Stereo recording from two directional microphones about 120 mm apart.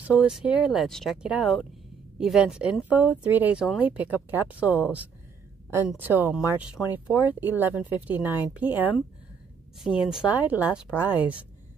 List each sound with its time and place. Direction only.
0.0 s speech: 10° right (ahead or behind)
10.0 s speech: 10° right (ahead or behind)